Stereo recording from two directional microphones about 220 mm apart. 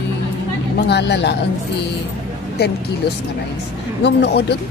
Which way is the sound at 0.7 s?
50° left (ahead or behind).